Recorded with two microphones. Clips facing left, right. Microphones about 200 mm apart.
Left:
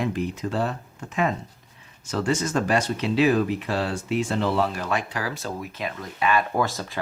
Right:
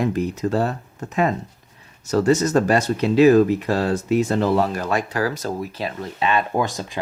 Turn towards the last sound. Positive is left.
turn(degrees=-15)  # may be behind; listen again after turning